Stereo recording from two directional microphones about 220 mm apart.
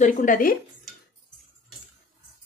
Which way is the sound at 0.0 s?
35° left (ahead or behind).